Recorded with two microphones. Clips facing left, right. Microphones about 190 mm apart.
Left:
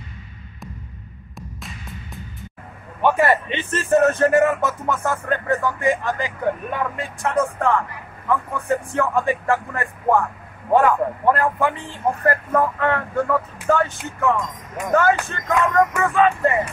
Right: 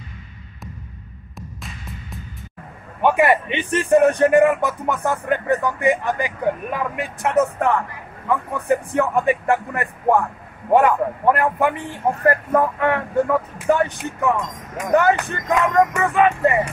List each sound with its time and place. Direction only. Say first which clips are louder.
1.3 s music: even; centre (ahead or behind)
3.0 s a man's voice: right 1 dB; 15° right (ahead or behind)